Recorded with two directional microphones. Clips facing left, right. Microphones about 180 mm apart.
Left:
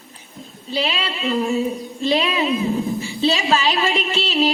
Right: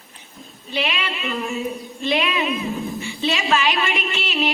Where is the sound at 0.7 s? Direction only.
35° left (ahead or behind).